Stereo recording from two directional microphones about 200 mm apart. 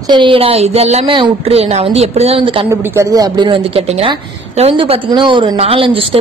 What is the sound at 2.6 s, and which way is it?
A woman's voice, 15° right (ahead or behind).